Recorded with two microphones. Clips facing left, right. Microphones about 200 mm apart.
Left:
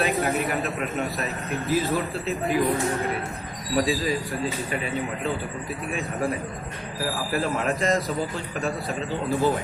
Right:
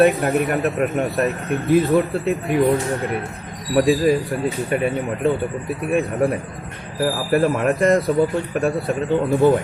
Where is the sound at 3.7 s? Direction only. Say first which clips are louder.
Right 8 dB; 60° right (ahead or behind).